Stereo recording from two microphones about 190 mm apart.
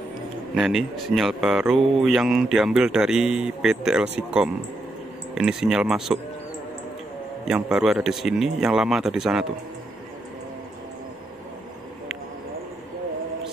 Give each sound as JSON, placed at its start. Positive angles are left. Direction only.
{"t": 0.6, "sound": "speech", "side_deg": 0}
{"t": 7.4, "sound": "speech", "side_deg": -5}